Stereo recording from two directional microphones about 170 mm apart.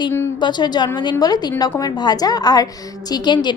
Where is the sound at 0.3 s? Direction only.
25° left (ahead or behind).